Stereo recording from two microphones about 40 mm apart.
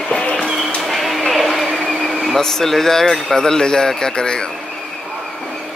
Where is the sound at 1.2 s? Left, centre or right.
Centre.